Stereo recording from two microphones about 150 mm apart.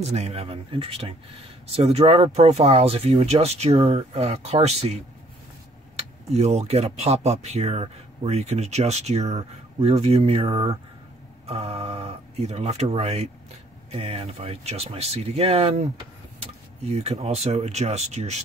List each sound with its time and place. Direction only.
0.0 s speech: 45° right (ahead or behind)
5.9 s speech: 45° right (ahead or behind)
16.8 s speech: 45° right (ahead or behind)